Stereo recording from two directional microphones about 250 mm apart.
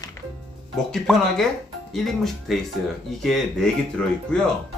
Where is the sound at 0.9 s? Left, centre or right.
Centre.